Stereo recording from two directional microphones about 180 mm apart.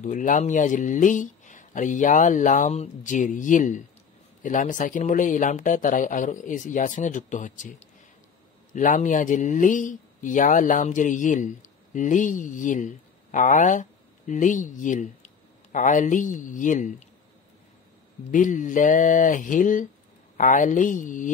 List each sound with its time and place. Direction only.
0.0 s speech: 45° left (ahead or behind)
8.7 s speech: 45° left (ahead or behind)
18.3 s speech: 45° left (ahead or behind)